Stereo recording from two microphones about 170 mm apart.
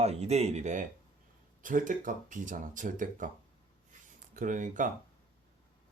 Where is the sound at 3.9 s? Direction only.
50° right (ahead or behind).